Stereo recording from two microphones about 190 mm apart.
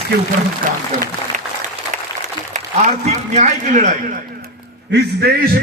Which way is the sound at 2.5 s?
40° right (ahead or behind).